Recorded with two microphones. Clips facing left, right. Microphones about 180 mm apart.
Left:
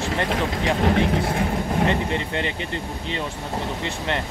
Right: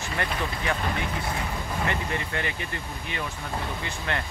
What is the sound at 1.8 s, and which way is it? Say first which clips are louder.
Speech: left 6 dB; 20° left (ahead or behind).